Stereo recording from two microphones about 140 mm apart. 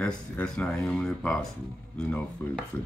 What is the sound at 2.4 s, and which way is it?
Speech, 15° left (ahead or behind).